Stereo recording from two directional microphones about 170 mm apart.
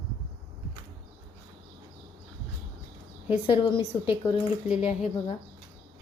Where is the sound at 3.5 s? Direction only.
30° left (ahead or behind).